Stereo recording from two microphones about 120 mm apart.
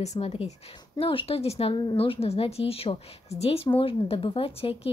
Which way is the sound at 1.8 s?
45° left (ahead or behind).